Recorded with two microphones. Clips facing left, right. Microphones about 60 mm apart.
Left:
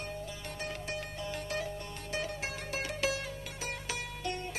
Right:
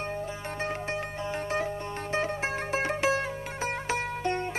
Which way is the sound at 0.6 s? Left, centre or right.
Right.